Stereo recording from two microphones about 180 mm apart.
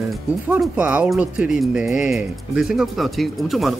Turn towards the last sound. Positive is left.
turn(degrees=0)  # may be behind; listen again after turning